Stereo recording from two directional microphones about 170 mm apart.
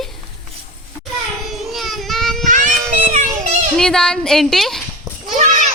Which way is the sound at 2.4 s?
50° right (ahead or behind).